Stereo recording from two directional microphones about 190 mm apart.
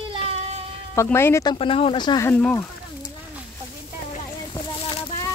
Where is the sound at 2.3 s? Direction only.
5° left (ahead or behind).